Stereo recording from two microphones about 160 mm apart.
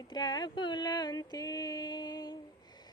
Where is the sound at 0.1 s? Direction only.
25° left (ahead or behind).